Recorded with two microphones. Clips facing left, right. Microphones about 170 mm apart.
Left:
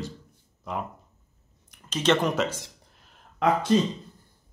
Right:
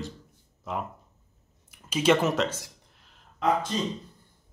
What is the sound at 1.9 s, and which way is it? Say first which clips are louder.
Speech: right 1 dB; 10° right (ahead or behind).